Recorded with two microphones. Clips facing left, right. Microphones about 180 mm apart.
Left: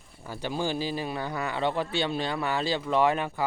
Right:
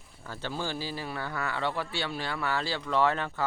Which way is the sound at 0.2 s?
15° left (ahead or behind).